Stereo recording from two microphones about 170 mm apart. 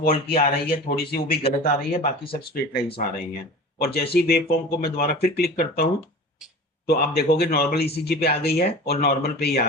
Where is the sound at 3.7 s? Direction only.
65° left (ahead or behind).